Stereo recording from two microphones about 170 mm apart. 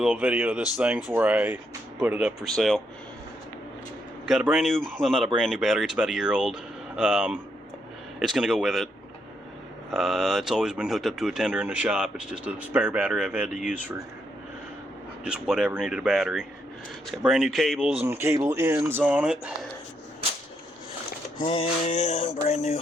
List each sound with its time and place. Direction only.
0.0 s speech: 5° right (ahead or behind)
4.3 s speech: 5° right (ahead or behind)
9.9 s speech: centre (ahead or behind)
15.2 s speech: 5° right (ahead or behind)
21.4 s music: 35° left (ahead or behind)